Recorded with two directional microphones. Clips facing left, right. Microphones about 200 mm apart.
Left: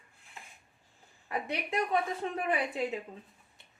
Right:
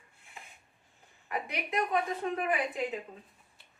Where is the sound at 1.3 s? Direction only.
30° left (ahead or behind).